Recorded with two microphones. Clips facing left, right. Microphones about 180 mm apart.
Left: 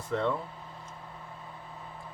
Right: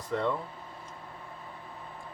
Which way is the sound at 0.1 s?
Centre (ahead or behind).